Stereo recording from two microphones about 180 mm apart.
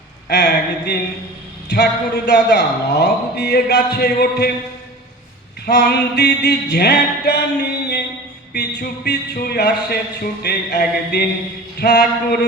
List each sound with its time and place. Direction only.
0.3 s a sound: 65° left (ahead or behind)
1.7 s a man's voice: 65° left (ahead or behind)
5.6 s a man's voice: 65° left (ahead or behind)
8.5 s a man's voice: 65° left (ahead or behind)